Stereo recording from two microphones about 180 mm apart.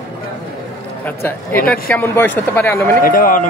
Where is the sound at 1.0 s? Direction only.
10° left (ahead or behind).